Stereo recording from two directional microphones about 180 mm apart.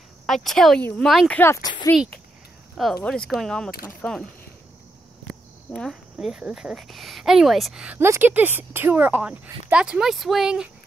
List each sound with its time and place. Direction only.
0.3 s speech: centre (ahead or behind); by 1.9 s 20° left (ahead or behind)
2.8 s speech: centre (ahead or behind)
5.7 s speech: centre (ahead or behind)